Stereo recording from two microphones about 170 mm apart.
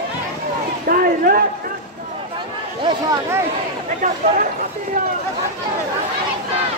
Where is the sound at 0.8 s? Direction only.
60° right (ahead or behind).